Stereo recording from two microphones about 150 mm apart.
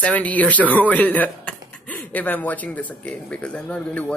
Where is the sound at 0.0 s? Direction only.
10° left (ahead or behind).